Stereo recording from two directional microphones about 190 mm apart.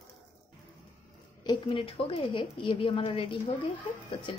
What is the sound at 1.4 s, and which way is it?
Speech, 25° left (ahead or behind).